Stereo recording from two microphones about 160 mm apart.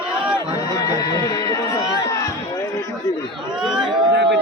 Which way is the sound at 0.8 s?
20° left (ahead or behind).